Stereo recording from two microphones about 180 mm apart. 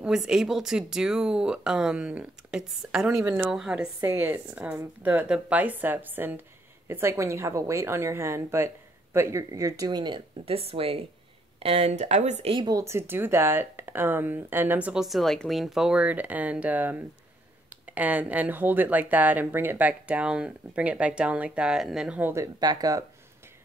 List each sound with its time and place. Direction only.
0.0 s speech: 5° right (ahead or behind); by 23.0 s 20° right (ahead or behind)